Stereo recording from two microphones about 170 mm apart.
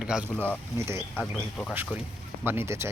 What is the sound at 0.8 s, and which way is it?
Speech, 15° right (ahead or behind).